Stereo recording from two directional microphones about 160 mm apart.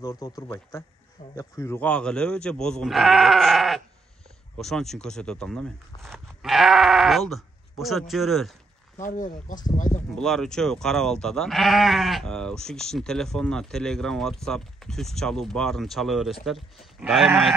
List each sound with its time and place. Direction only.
0.0 s speech: 20° left (ahead or behind); by 8.5 s centre (ahead or behind)
8.9 s speech: 55° left (ahead or behind)
10.1 s speech: 5° left (ahead or behind)